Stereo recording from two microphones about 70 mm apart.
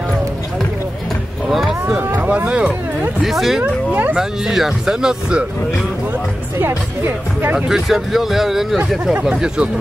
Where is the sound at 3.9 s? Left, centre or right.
Right.